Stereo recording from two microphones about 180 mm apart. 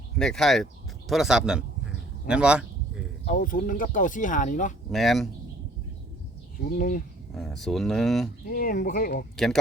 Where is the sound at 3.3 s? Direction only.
50° left (ahead or behind).